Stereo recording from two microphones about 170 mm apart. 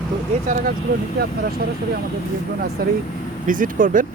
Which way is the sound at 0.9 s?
55° right (ahead or behind).